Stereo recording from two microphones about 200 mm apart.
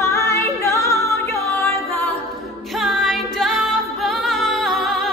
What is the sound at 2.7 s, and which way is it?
Music, centre (ahead or behind).